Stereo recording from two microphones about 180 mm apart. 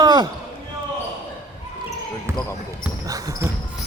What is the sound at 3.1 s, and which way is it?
Basketball bounce, 20° right (ahead or behind).